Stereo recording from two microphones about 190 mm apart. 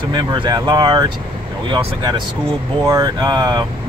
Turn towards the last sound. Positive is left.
turn(degrees=-20)  # may be behind; listen again after turning